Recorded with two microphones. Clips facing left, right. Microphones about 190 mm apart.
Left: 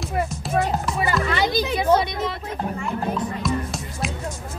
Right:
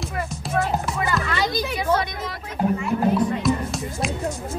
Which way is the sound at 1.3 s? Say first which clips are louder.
Left 2 dB; 25° left (ahead or behind).